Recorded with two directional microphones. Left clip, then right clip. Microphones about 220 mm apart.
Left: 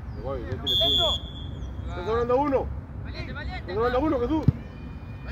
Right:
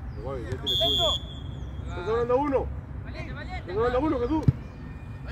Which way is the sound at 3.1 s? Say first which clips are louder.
Left 2 dB; 30° left (ahead or behind).